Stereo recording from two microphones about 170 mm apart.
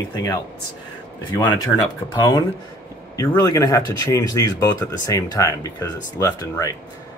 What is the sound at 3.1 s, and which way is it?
Speech, 20° left (ahead or behind).